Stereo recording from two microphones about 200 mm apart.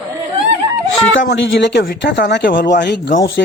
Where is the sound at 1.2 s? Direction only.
55° left (ahead or behind).